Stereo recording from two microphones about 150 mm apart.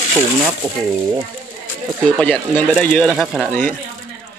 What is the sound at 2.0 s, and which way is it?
Speech, 10° left (ahead or behind).